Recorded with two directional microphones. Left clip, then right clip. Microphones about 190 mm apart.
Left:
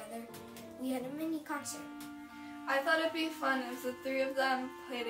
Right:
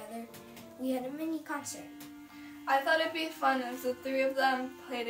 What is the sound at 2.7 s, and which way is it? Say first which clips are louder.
Music: right 3 dB; 15° right (ahead or behind).